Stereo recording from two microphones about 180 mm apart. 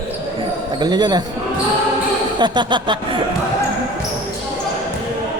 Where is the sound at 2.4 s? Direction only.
25° right (ahead or behind).